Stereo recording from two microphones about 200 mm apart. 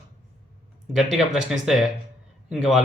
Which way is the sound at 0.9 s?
Centre (ahead or behind).